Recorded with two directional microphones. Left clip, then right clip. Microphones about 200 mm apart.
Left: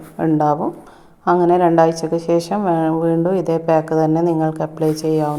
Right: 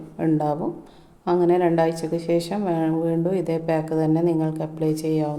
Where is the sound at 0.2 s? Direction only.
20° left (ahead or behind).